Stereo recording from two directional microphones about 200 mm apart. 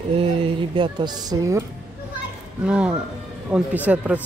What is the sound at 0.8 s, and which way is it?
Speech, 20° right (ahead or behind).